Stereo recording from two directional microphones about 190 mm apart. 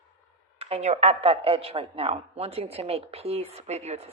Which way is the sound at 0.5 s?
30° right (ahead or behind).